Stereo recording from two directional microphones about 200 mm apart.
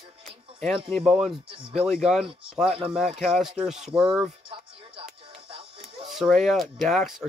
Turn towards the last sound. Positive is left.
turn(degrees=0)  # may be behind; listen again after turning